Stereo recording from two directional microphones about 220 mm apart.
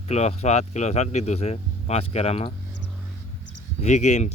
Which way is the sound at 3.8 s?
30° left (ahead or behind).